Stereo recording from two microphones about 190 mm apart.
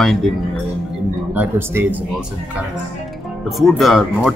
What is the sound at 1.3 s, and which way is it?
Speech, 10° right (ahead or behind).